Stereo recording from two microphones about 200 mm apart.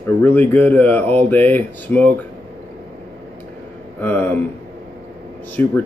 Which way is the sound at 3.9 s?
10° left (ahead or behind).